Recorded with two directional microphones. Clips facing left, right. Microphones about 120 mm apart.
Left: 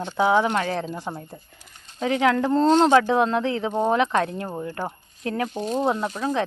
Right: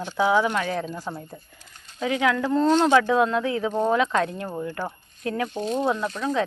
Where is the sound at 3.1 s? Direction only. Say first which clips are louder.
Even; 25° left (ahead or behind).